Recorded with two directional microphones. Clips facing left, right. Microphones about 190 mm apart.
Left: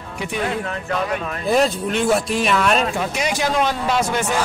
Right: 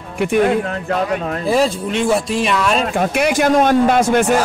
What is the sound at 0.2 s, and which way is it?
Speech, 55° right (ahead or behind).